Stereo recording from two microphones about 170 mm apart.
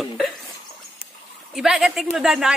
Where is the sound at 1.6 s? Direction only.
Centre (ahead or behind).